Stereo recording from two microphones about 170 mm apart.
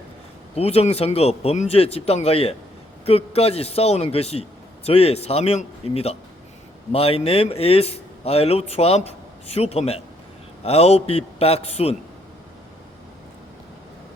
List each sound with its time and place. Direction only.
0.5 s a man's voice: 35° left (ahead or behind)